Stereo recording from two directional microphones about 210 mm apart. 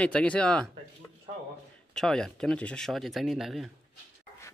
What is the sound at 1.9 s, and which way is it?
Speech, 5° left (ahead or behind).